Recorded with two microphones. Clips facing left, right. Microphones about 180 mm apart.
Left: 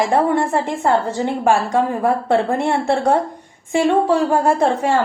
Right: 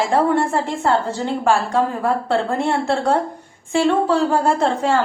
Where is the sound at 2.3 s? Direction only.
20° left (ahead or behind).